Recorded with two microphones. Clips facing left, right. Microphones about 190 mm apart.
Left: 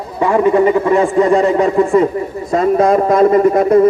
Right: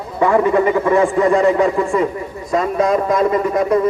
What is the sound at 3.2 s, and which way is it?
Speech, 50° left (ahead or behind).